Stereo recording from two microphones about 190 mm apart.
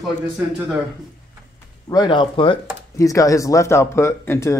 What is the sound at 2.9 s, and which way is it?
Speech, 15° left (ahead or behind).